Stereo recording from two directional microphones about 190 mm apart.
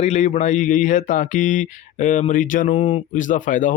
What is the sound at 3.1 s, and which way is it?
Speech, 40° left (ahead or behind).